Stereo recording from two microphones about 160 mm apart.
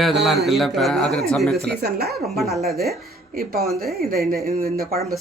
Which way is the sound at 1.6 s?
85° right.